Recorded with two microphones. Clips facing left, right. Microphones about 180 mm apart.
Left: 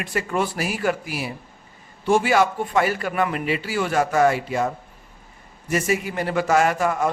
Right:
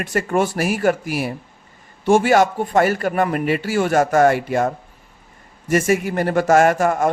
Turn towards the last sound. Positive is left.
turn(degrees=-50)  # may be behind; listen again after turning